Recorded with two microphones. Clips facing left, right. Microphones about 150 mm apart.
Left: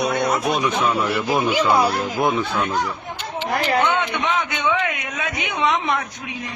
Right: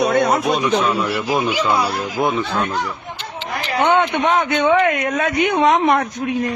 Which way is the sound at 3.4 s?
55° left (ahead or behind).